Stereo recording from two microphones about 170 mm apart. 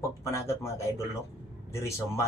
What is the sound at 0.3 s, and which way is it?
Speech, 15° left (ahead or behind).